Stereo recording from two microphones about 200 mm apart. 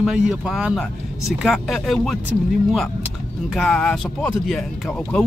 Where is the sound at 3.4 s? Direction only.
Centre (ahead or behind).